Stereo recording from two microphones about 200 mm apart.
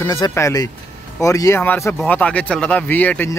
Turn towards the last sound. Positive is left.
turn(degrees=10)  # may be behind; listen again after turning